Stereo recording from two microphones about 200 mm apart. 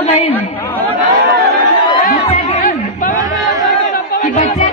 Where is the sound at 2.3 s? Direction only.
35° left (ahead or behind).